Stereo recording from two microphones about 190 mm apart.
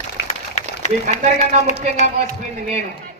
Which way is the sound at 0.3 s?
35° left (ahead or behind).